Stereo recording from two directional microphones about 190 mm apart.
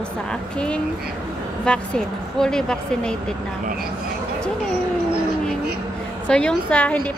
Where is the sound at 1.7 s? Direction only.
5° left (ahead or behind).